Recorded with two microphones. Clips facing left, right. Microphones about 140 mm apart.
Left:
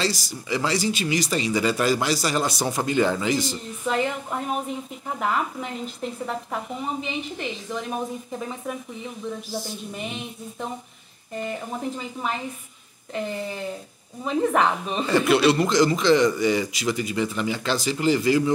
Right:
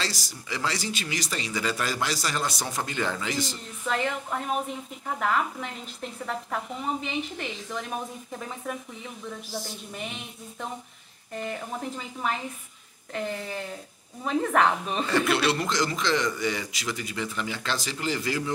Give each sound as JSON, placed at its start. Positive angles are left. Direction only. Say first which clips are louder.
{"t": 0.0, "sound": "a woman's voice", "louder": "left 7 dB", "side_deg": 5}